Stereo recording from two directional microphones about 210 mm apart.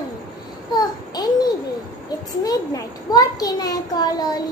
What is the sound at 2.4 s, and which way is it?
A child's voice, 15° left (ahead or behind).